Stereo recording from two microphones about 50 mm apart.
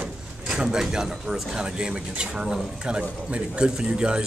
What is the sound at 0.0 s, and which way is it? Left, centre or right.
Speech, centre.